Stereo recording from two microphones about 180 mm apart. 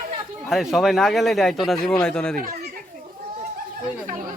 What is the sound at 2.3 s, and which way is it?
Speech, 50° right (ahead or behind).